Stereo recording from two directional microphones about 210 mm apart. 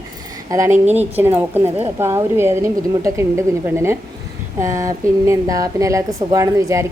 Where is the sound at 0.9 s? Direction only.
10° right (ahead or behind).